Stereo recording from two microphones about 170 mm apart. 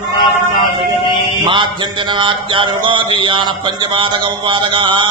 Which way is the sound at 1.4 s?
30° right (ahead or behind).